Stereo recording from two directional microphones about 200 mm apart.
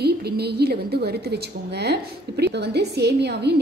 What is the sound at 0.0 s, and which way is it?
A woman's voice, 55° right (ahead or behind).